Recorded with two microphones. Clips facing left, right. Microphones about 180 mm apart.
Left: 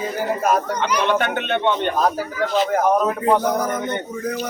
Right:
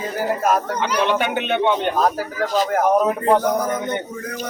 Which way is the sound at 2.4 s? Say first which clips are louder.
Left 1 dB; 40° right (ahead or behind).